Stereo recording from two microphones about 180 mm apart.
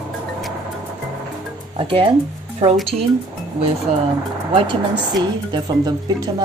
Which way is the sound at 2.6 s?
35° right (ahead or behind).